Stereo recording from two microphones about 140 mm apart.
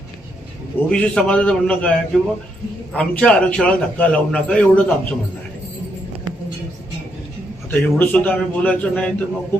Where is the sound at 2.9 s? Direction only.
5° left (ahead or behind).